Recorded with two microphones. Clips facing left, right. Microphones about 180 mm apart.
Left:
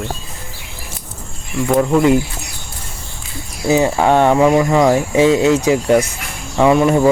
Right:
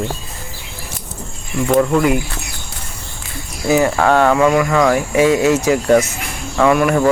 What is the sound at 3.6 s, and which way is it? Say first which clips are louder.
Speech: even; 20° left (ahead or behind).